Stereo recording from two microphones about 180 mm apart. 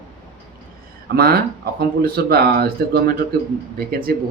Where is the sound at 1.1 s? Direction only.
60° right (ahead or behind).